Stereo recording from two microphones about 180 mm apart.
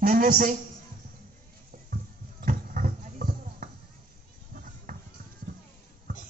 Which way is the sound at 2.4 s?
50° right (ahead or behind).